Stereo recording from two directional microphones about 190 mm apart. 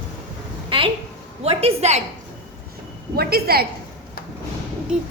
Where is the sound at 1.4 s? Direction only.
35° right (ahead or behind).